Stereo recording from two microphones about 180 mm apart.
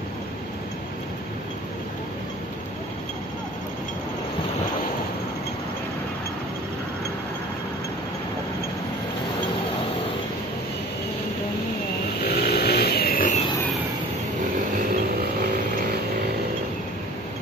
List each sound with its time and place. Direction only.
12.3 s vehicle: 60° left (ahead or behind)